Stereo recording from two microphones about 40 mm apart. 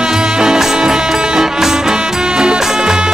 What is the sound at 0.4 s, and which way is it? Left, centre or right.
Music, centre.